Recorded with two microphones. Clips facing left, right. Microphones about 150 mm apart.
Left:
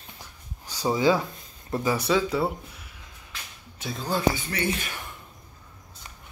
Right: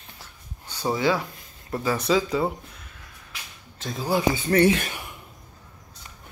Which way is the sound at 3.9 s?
10° right (ahead or behind).